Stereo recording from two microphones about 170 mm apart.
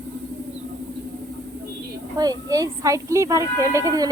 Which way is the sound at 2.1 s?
20° right (ahead or behind).